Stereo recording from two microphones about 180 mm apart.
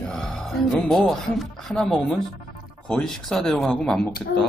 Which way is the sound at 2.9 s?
5° left (ahead or behind).